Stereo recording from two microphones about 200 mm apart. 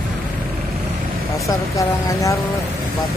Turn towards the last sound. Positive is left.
turn(degrees=15)  # may be behind; listen again after turning